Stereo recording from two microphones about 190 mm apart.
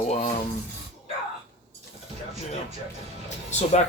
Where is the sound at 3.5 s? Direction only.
35° left (ahead or behind).